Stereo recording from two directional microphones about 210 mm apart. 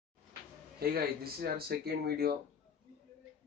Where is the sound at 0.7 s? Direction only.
45° right (ahead or behind).